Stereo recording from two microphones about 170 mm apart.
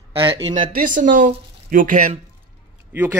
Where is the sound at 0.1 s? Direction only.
30° right (ahead or behind).